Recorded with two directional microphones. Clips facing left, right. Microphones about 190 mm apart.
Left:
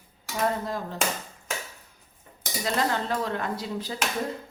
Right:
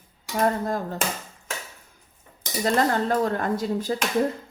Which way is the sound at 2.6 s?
45° right (ahead or behind).